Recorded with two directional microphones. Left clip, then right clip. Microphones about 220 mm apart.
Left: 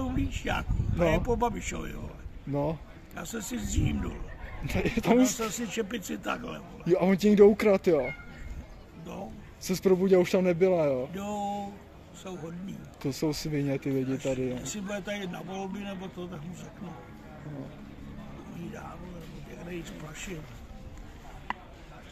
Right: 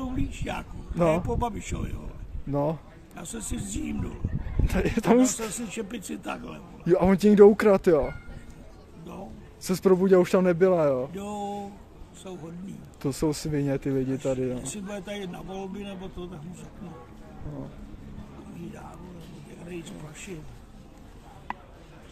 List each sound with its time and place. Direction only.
0.0 s speech: 5° right (ahead or behind)
2.5 s a man's voice: 20° right (ahead or behind)
3.2 s speech: 5° right (ahead or behind)
4.6 s a man's voice: 20° right (ahead or behind)
5.7 s speech: 5° right (ahead or behind)
6.9 s a man's voice: 20° right (ahead or behind)
9.6 s a man's voice: 20° right (ahead or behind)
11.1 s speech: 5° right (ahead or behind)
13.0 s a man's voice: 20° right (ahead or behind)
14.6 s speech: 5° right (ahead or behind)
19.7 s speech: 5° right (ahead or behind)